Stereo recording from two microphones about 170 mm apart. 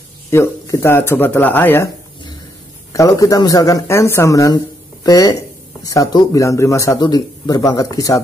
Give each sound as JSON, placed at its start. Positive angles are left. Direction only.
{"t": 0.3, "sound": "speech", "side_deg": 15}
{"t": 2.9, "sound": "speech", "side_deg": 20}